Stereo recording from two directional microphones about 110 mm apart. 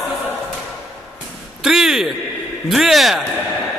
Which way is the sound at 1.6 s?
5° right (ahead or behind).